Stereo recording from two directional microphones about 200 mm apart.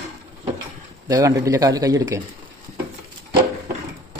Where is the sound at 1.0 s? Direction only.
15° right (ahead or behind).